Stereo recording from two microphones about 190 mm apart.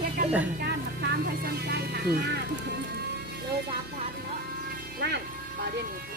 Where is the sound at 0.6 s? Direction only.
55° right (ahead or behind).